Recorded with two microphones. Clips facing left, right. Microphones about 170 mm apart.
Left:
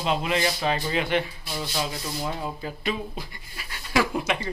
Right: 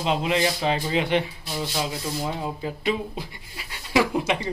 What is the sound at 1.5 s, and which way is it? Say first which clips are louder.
Speech: right 2 dB; 10° right (ahead or behind).